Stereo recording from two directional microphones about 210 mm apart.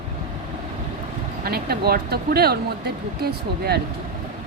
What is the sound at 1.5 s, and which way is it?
Speech, 45° right (ahead or behind).